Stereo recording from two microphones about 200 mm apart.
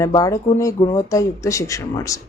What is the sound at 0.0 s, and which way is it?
A woman's voice, 15° left (ahead or behind).